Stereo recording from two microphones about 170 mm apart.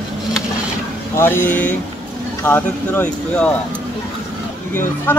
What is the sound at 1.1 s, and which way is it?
Speech, 15° left (ahead or behind).